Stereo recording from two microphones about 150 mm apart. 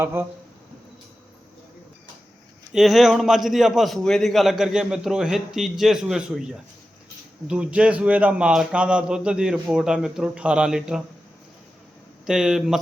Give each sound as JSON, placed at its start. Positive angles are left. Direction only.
{"t": 0.0, "sound": "speech", "side_deg": -15}
{"t": 2.7, "sound": "a man's voice", "side_deg": 0}
{"t": 12.2, "sound": "a man's voice", "side_deg": -5}